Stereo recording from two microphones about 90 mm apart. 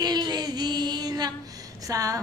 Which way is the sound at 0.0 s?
50° right (ahead or behind).